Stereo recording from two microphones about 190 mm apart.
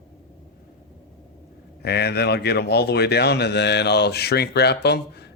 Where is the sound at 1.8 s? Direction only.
60° left (ahead or behind).